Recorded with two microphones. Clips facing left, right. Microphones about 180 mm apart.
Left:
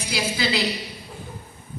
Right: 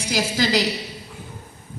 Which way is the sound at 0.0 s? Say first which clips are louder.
Right 3 dB; 45° right (ahead or behind).